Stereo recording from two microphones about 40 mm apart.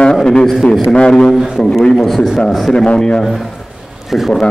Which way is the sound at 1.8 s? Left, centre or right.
Centre.